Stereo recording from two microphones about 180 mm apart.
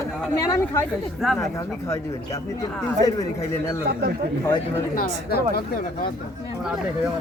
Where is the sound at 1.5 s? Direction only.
20° left (ahead or behind).